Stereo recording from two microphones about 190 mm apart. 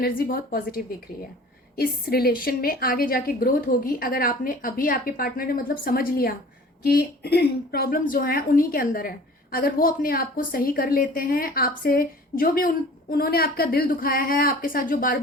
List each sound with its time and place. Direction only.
0.0 s a woman's voice: 50° left (ahead or behind)